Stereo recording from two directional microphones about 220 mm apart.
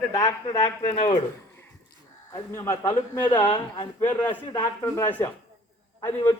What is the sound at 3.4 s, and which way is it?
A man's voice, 20° left (ahead or behind).